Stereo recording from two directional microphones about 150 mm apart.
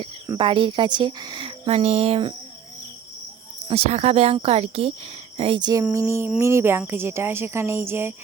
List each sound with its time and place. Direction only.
0.3 s a woman's voice: 35° right (ahead or behind)
1.7 s speech: 45° right (ahead or behind)
3.7 s a woman's voice: 45° right (ahead or behind); by 5.8 s 30° right (ahead or behind)
5.9 s speech: 20° right (ahead or behind)